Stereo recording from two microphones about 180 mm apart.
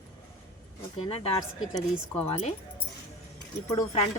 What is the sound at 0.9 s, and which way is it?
Speech, 35° left (ahead or behind).